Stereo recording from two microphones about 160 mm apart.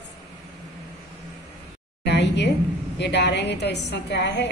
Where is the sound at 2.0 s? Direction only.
90° left.